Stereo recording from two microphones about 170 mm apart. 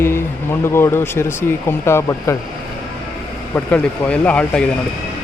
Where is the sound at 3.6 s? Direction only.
10° left (ahead or behind).